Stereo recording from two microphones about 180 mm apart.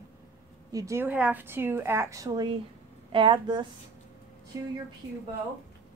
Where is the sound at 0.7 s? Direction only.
20° right (ahead or behind).